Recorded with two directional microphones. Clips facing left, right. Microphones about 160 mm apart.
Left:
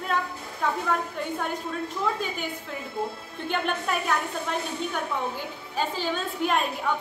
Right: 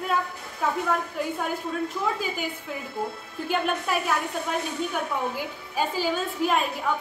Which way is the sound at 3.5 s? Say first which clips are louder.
Right 2 dB; 5° right (ahead or behind).